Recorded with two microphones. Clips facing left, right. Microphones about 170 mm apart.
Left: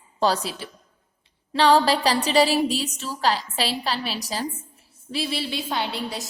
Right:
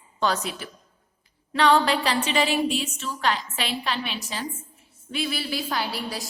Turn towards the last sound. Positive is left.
turn(degrees=20)  # may be behind; listen again after turning